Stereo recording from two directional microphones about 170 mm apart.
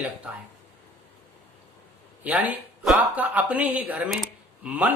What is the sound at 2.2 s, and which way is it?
Speech, 10° right (ahead or behind).